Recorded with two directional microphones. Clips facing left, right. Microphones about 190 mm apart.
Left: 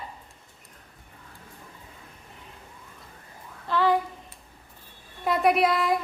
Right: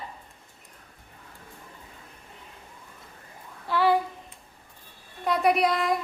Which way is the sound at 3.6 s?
10° right (ahead or behind).